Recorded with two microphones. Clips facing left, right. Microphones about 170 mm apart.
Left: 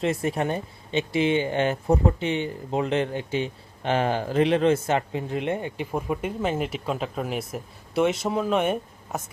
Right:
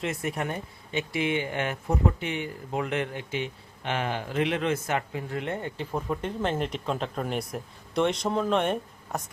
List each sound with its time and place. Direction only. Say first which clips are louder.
0.0 s speech: left 6 dB; 30° left (ahead or behind); by 9.2 s 5° left (ahead or behind)